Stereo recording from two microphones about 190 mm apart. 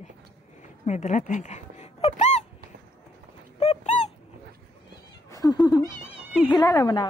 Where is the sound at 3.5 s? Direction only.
35° left (ahead or behind).